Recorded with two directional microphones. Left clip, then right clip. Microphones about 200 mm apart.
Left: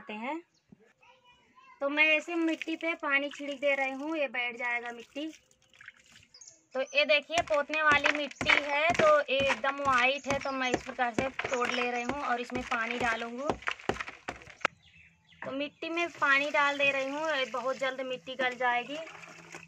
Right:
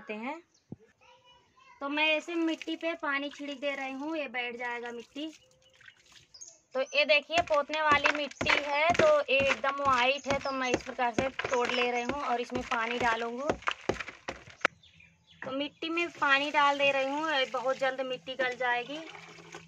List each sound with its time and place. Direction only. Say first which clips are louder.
0.0 s speech: left 1 dB; 40° left (ahead or behind)
1.8 s speech: left 3 dB; 10° left (ahead or behind)
6.7 s speech: right 1 dB; 5° right (ahead or behind)
15.5 s speech: right 1 dB; 10° left (ahead or behind)